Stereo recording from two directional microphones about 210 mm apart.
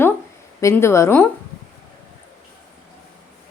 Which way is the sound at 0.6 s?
10° left (ahead or behind).